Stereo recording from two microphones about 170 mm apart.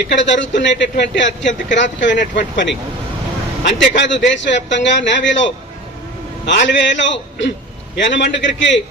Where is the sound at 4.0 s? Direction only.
90° left.